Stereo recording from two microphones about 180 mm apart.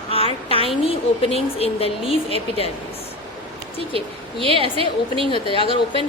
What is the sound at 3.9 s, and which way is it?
A woman's voice, 30° right (ahead or behind).